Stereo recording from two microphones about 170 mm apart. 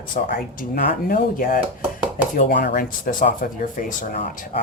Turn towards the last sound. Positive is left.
turn(degrees=50)  # may be behind; listen again after turning